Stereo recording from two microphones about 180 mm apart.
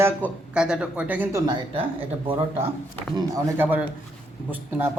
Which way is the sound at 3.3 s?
10° right (ahead or behind).